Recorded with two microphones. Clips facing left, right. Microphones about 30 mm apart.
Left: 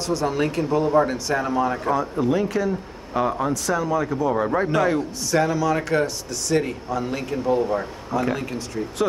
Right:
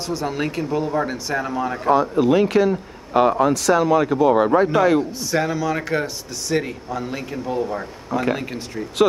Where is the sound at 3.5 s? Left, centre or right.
Right.